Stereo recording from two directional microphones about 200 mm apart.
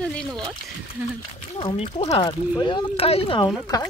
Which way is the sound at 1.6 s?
25° left (ahead or behind).